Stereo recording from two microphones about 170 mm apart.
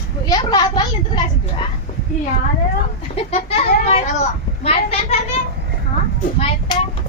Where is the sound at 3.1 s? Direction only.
35° left (ahead or behind).